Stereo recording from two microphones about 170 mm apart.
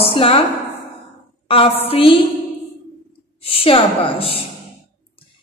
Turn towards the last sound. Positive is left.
turn(degrees=35)  # may be behind; listen again after turning